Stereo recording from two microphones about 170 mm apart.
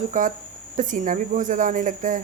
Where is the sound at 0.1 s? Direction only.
50° right (ahead or behind).